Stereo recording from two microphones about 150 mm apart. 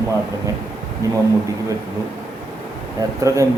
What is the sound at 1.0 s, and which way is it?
Speech, 20° right (ahead or behind).